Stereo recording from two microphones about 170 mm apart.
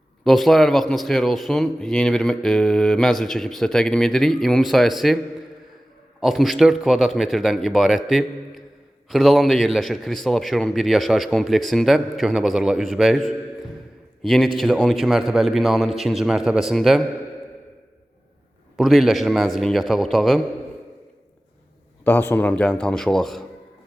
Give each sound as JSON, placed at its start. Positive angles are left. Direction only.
{"t": 0.3, "sound": "speech", "side_deg": 0}
{"t": 6.1, "sound": "speech", "side_deg": 0}
{"t": 18.8, "sound": "speech", "side_deg": 0}
{"t": 22.0, "sound": "speech", "side_deg": 10}